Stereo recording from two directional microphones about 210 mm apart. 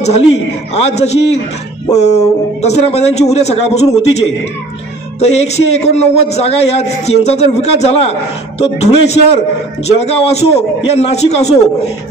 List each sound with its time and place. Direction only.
0.7 s a man's voice: 30° left (ahead or behind)
5.2 s a man's voice: 30° left (ahead or behind)